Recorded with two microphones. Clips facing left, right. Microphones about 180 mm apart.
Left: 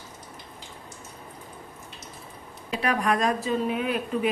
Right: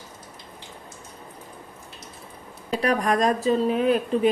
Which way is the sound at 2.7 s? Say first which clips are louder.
Right 3 dB; 35° right (ahead or behind).